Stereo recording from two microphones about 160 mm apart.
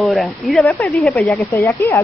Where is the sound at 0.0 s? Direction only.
Centre (ahead or behind).